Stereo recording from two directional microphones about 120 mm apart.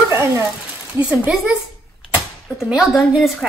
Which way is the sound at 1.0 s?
10° right (ahead or behind).